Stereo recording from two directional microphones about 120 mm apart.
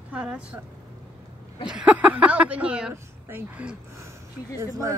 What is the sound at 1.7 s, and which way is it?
Speech, 10° right (ahead or behind).